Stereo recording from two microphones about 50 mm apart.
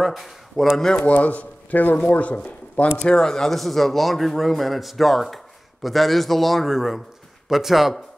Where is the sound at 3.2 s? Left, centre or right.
Centre.